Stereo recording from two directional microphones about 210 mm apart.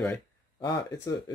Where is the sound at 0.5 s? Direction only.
15° left (ahead or behind).